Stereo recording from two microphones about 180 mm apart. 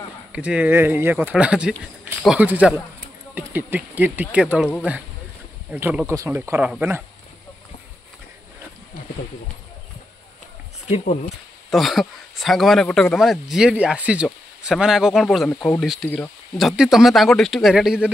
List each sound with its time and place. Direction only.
0.3 s speech: 5° right (ahead or behind)
11.7 s speech: centre (ahead or behind)